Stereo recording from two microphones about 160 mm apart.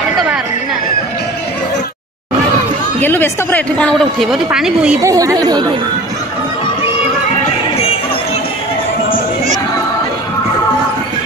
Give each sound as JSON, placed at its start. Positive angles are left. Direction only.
{"t": 3.0, "sound": "a woman's voice", "side_deg": 10}
{"t": 5.0, "sound": "speech", "side_deg": -20}